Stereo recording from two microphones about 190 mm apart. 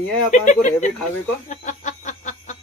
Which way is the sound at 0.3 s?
40° left (ahead or behind).